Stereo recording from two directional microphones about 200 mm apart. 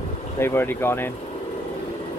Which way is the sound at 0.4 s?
10° left (ahead or behind).